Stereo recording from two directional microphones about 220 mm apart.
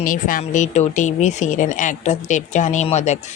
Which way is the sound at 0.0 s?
40° left (ahead or behind).